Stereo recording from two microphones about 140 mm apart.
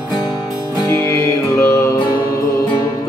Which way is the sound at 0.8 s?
20° left (ahead or behind).